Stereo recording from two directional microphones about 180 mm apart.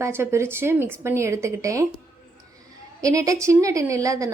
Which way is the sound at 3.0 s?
20° right (ahead or behind).